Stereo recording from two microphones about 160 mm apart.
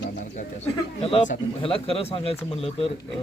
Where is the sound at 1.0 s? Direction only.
35° left (ahead or behind).